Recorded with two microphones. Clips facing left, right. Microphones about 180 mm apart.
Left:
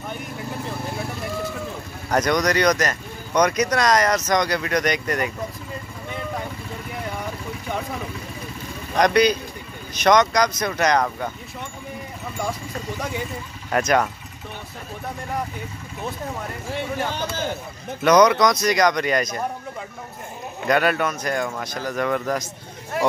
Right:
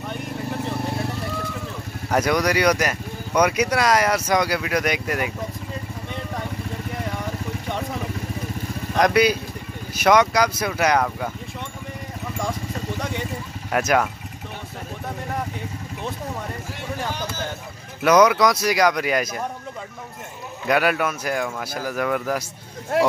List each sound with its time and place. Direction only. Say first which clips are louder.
2.0 s speech: even; 5° right (ahead or behind)
8.9 s speech: left 1 dB; 5° right (ahead or behind)
13.7 s speech: even; 5° right (ahead or behind)
18.0 s speech: even; 5° right (ahead or behind)
20.6 s speech: even; 5° right (ahead or behind)